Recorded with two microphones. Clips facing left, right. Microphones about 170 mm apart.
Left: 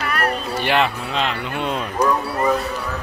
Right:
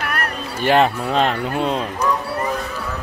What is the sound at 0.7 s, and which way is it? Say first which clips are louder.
Speech: right 5 dB; 45° right (ahead or behind).